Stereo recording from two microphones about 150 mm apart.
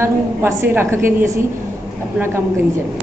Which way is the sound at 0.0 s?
15° right (ahead or behind).